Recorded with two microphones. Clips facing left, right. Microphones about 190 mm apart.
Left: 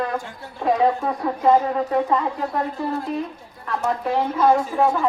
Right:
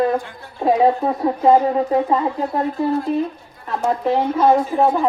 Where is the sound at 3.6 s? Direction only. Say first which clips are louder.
Right 4 dB; 30° right (ahead or behind).